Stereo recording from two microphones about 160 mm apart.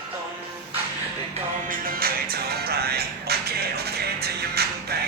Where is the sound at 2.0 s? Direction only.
75° right (ahead or behind).